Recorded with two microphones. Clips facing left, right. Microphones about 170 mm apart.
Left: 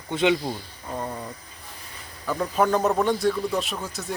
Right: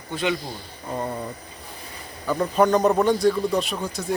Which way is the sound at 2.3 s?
Centre (ahead or behind).